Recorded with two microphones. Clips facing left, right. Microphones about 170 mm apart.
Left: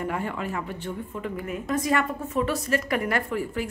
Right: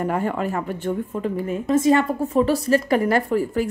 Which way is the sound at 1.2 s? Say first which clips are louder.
Right 5 dB; 30° right (ahead or behind).